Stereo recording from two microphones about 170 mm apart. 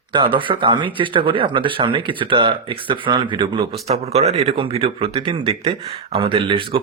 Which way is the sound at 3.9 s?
40° right (ahead or behind).